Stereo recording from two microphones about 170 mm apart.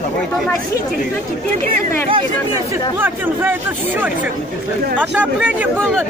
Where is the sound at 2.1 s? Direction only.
30° right (ahead or behind).